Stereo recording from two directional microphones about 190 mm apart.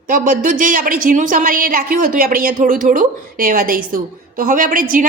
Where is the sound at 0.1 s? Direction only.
45° right (ahead or behind).